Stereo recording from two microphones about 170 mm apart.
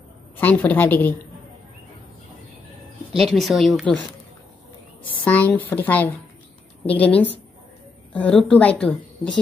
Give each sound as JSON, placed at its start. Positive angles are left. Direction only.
{"t": 0.4, "sound": "a woman's voice", "side_deg": 10}
{"t": 3.2, "sound": "speech", "side_deg": 0}
{"t": 5.0, "sound": "a woman's voice", "side_deg": 10}